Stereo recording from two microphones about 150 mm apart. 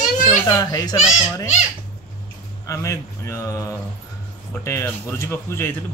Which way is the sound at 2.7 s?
20° left (ahead or behind).